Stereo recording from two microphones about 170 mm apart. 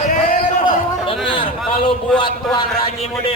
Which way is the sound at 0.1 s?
50° left (ahead or behind).